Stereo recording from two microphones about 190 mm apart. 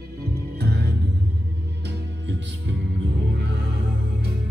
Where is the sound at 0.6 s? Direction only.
60° right (ahead or behind).